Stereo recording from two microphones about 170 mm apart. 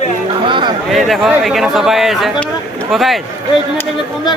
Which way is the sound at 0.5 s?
30° right (ahead or behind).